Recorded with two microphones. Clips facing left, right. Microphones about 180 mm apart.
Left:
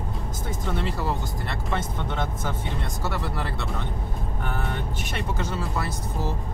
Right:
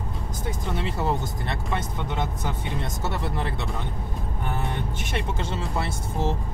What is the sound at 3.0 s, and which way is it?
Speech, 20° right (ahead or behind).